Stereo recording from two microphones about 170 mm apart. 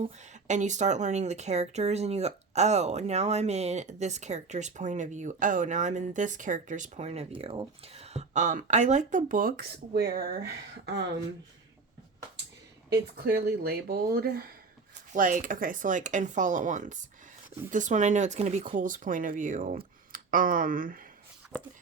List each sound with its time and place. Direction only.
0.0 s speech: 45° right (ahead or behind); by 10.4 s 60° right (ahead or behind)
10.8 s speech: 90° right
12.9 s speech: 65° right (ahead or behind)
15.1 s speech: 50° right (ahead or behind)